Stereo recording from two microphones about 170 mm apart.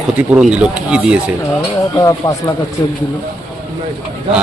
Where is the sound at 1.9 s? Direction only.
20° left (ahead or behind).